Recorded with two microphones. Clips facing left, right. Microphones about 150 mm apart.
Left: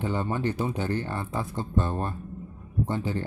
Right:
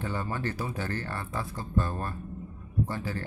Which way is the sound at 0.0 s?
20° left (ahead or behind).